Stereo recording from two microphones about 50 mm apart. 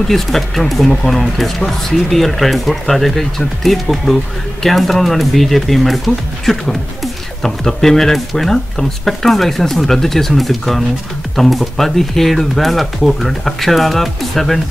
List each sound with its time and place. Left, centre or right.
0.1 s speech: centre